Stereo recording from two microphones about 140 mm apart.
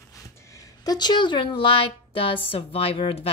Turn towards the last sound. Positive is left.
turn(degrees=45)  # may be behind; listen again after turning